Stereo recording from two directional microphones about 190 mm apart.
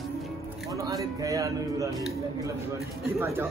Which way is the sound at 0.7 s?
15° right (ahead or behind).